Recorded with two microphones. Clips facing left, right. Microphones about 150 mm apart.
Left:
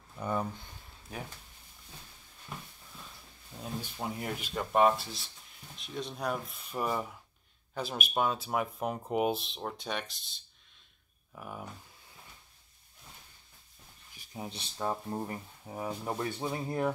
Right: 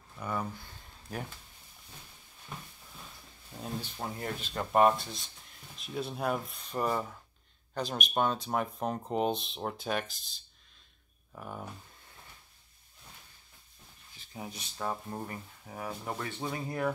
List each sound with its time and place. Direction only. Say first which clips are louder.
0.2 s speech: left 2 dB; 10° left (ahead or behind)
3.8 s speech: left 1 dB; 10° left (ahead or behind)
4.6 s speech: right 1 dB; centre (ahead or behind)
14.1 s a sound: left 1 dB; 15° left (ahead or behind)
14.8 s speech: left 2 dB; 10° left (ahead or behind)
16.5 s speech: even; 25° left (ahead or behind)